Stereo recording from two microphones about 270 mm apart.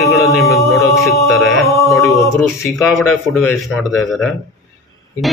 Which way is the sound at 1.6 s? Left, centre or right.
Centre.